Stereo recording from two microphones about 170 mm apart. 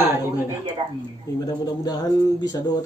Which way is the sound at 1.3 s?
20° left (ahead or behind).